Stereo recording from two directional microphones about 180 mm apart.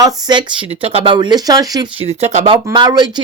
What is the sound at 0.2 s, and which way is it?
Speech, 25° right (ahead or behind).